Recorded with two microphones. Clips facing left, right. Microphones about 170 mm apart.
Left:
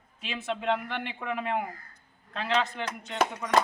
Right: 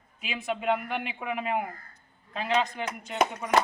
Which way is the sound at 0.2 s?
5° right (ahead or behind).